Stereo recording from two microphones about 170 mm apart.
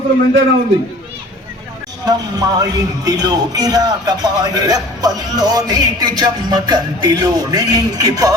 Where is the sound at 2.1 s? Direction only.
25° right (ahead or behind).